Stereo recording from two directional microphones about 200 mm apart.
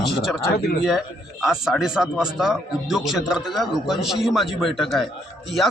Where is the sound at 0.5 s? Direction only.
50° left (ahead or behind).